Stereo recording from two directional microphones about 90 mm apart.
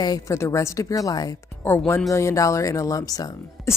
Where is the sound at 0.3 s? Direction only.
35° left (ahead or behind).